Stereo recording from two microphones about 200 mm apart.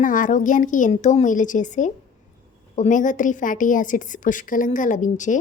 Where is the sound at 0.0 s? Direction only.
40° left (ahead or behind).